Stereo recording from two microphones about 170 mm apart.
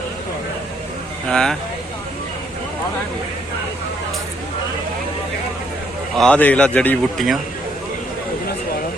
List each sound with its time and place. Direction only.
1.3 s speech: 5° left (ahead or behind)
6.1 s speech: 5° left (ahead or behind)